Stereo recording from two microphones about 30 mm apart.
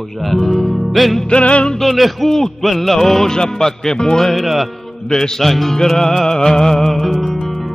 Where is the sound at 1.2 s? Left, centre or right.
Left.